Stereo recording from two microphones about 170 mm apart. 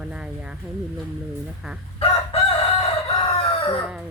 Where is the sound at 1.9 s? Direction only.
35° left (ahead or behind).